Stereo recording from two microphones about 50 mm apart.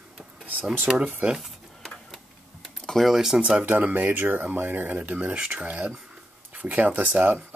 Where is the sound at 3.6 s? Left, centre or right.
Right.